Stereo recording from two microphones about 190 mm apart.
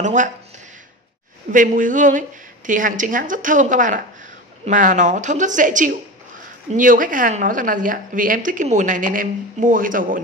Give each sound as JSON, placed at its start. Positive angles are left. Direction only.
{"t": 0.0, "sound": "speech", "side_deg": -40}
{"t": 1.5, "sound": "a woman's voice", "side_deg": -45}